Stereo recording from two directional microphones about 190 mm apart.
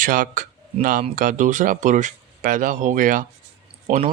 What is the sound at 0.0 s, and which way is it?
Speech, 45° right (ahead or behind).